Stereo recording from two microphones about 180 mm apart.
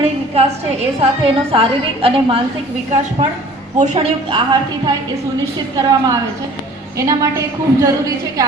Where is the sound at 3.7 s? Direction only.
40° right (ahead or behind).